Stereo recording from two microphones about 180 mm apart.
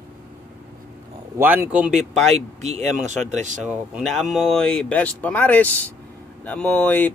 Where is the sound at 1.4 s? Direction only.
10° right (ahead or behind).